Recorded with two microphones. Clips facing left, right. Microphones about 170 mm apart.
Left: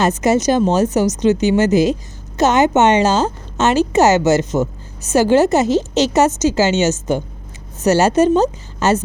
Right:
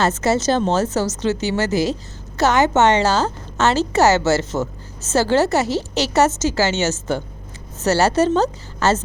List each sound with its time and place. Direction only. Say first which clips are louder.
0.0 s a woman's voice: left 3 dB; 15° left (ahead or behind)